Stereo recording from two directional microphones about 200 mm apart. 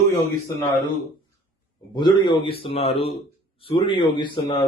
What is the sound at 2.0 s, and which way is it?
Speech, 20° left (ahead or behind).